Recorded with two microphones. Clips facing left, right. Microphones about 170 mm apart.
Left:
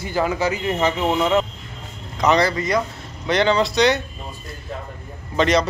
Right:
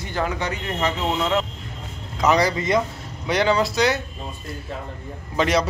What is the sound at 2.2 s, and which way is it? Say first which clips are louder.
Speech: left 1 dB; 10° right (ahead or behind).